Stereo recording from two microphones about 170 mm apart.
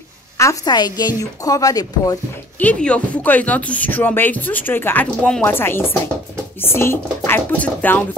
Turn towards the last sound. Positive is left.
turn(degrees=10)  # may be behind; listen again after turning